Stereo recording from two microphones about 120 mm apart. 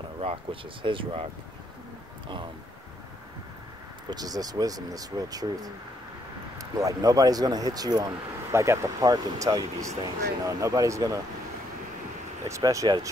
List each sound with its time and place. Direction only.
0.2 s speech: 50° right (ahead or behind)
2.2 s speech: 40° right (ahead or behind)
4.1 s speech: 30° right (ahead or behind)
12.4 s speech: 25° right (ahead or behind)